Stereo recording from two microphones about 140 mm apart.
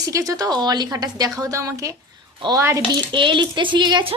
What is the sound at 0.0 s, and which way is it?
A woman's voice, 25° right (ahead or behind).